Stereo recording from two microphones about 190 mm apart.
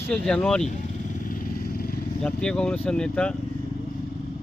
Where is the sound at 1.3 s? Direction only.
50° left (ahead or behind).